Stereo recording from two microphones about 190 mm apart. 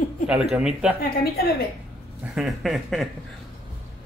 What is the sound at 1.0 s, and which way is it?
Speech, 55° left (ahead or behind).